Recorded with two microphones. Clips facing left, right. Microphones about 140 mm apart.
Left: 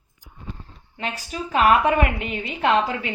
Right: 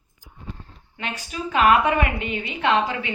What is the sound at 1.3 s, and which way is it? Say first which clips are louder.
A woman's voice: even; 40° left (ahead or behind).